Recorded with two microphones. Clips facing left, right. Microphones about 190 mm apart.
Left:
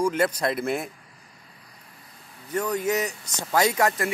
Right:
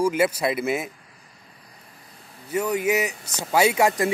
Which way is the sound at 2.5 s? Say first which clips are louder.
Right 2 dB; 10° right (ahead or behind).